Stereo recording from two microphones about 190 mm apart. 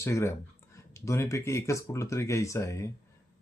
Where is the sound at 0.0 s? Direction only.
15° left (ahead or behind).